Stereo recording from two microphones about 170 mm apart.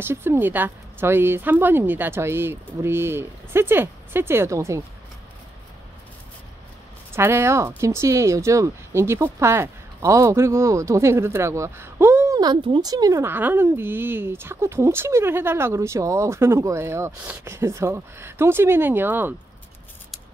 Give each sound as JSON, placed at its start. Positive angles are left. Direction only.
{"t": 0.0, "sound": "speech", "side_deg": -15}
{"t": 7.2, "sound": "speech", "side_deg": -15}